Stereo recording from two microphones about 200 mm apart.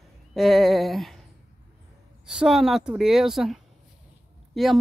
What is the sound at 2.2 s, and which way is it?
A woman's voice, 5° right (ahead or behind).